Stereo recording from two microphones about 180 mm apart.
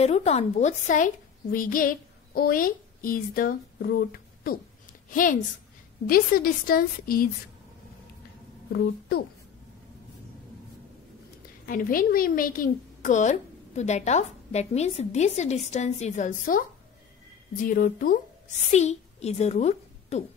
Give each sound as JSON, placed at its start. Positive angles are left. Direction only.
{"t": 0.0, "sound": "a woman's voice", "side_deg": 35}
{"t": 11.6, "sound": "a woman's voice", "side_deg": 50}
{"t": 18.7, "sound": "a woman's voice", "side_deg": 40}